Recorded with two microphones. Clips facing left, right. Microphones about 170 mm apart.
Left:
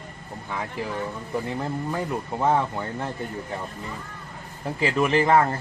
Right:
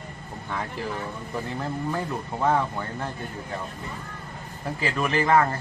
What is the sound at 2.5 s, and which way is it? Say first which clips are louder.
Speech: left 2 dB; 20° left (ahead or behind).